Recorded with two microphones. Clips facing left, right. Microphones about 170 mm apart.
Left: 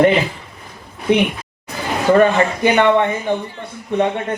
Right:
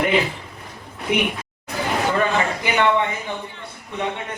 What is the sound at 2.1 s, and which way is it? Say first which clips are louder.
A man's voice: left 8 dB; 60° left (ahead or behind).